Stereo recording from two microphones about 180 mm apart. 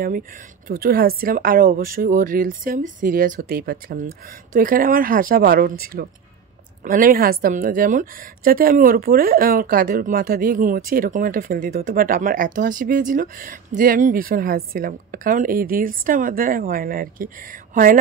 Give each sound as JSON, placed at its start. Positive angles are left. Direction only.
{"t": 0.7, "sound": "a woman's voice", "side_deg": -55}